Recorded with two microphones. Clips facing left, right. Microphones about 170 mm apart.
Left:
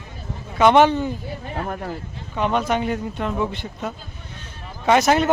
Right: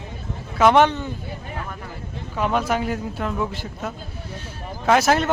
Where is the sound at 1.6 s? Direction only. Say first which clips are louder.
Left 6 dB; 45° left (ahead or behind).